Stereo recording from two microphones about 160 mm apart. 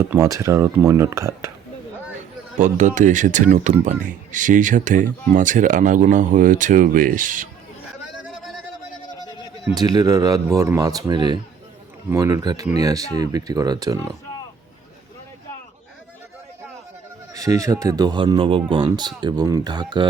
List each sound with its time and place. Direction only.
0.1 s speech: 20° right (ahead or behind)
2.6 s speech: 50° right (ahead or behind)
9.7 s speech: 25° right (ahead or behind)
17.3 s speech: 20° right (ahead or behind)